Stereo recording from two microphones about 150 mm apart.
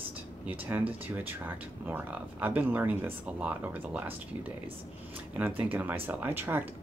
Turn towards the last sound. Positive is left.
turn(degrees=-15)  # may be behind; listen again after turning